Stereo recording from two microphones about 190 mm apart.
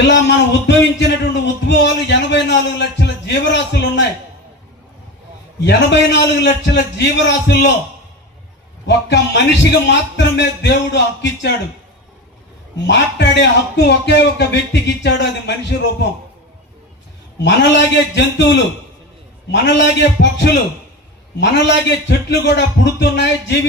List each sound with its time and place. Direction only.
0.1 s a sound: 65° left (ahead or behind)
5.6 s speech: 65° left (ahead or behind)
8.9 s speech: 65° left (ahead or behind)
12.9 s speech: 65° left (ahead or behind)
17.4 s speech: 65° left (ahead or behind)